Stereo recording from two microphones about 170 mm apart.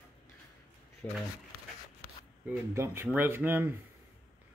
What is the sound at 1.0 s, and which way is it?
Speech, 10° left (ahead or behind).